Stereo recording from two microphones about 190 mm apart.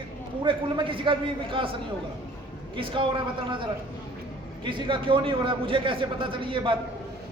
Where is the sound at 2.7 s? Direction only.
25° right (ahead or behind).